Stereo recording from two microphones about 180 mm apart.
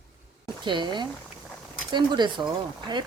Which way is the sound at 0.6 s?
25° right (ahead or behind).